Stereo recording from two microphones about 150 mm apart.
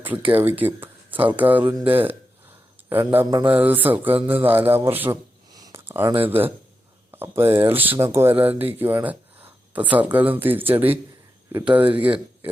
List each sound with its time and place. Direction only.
0.0 s speech: 10° right (ahead or behind)
3.2 s mantra: 25° right (ahead or behind)
3.5 s speech: 10° right (ahead or behind)